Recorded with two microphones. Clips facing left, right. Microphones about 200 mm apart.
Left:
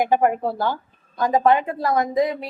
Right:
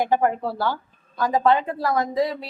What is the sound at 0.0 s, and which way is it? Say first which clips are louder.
A woman's voice: left 2 dB; 15° left (ahead or behind).